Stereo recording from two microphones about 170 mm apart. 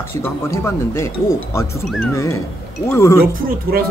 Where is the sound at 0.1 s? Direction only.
15° left (ahead or behind).